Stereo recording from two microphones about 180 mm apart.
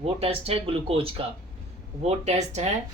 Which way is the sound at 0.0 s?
35° right (ahead or behind).